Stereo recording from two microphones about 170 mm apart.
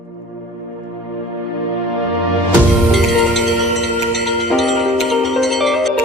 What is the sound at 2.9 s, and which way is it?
Music, centre (ahead or behind).